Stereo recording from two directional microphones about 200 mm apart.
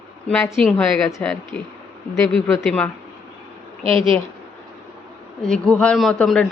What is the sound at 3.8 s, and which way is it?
Speech, 25° right (ahead or behind).